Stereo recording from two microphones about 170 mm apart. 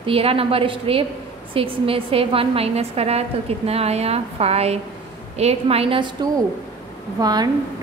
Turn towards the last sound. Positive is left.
turn(degrees=-25)  # may be behind; listen again after turning